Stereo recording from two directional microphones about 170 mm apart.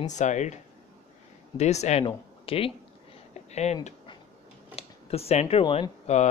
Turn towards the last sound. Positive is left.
turn(degrees=40)  # may be behind; listen again after turning